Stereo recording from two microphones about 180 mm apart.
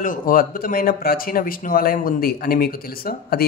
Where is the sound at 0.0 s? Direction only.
50° left (ahead or behind).